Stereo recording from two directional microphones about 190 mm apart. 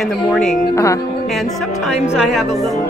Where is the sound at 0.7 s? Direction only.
15° left (ahead or behind).